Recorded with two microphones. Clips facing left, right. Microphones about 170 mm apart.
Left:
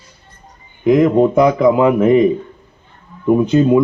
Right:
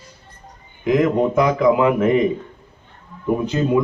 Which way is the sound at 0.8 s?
25° left (ahead or behind).